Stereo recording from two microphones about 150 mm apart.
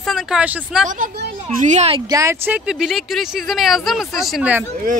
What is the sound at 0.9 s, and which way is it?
A woman's voice, 60° right (ahead or behind).